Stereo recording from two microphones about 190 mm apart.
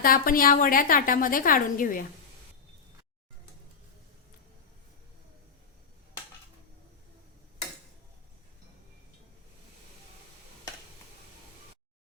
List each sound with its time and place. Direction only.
0.0 s a woman's voice: 50° left (ahead or behind)